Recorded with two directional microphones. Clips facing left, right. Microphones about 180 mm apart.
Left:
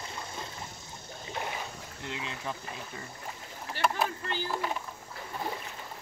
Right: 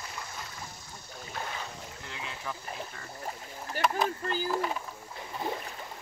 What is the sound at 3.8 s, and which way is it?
Speech, 45° right (ahead or behind).